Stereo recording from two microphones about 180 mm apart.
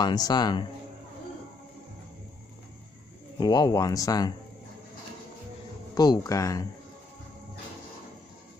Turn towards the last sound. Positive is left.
turn(degrees=20)  # may be behind; listen again after turning